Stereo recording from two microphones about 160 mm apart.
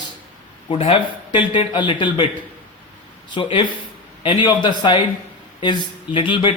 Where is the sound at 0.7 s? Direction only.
35° left (ahead or behind).